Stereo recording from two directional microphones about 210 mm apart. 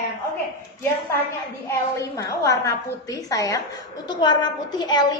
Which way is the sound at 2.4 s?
15° left (ahead or behind).